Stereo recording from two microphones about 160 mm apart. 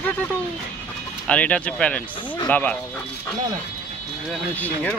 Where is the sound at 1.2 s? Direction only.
10° left (ahead or behind).